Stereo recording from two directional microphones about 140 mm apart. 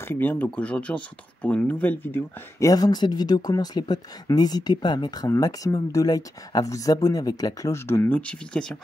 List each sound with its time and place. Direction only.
0.0 s speech: 15° left (ahead or behind)
2.7 s speech: 30° left (ahead or behind); by 8.7 s 5° left (ahead or behind)